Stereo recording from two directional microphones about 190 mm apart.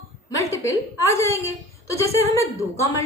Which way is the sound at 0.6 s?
15° left (ahead or behind).